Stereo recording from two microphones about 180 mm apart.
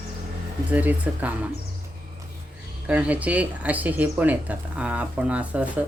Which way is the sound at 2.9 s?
5° right (ahead or behind).